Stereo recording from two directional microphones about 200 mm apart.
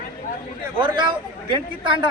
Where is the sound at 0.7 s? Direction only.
25° right (ahead or behind).